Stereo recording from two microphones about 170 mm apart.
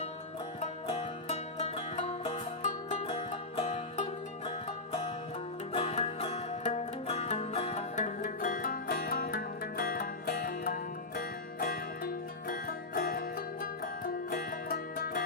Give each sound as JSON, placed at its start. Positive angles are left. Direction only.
{"t": 0.6, "sound": "music", "side_deg": 40}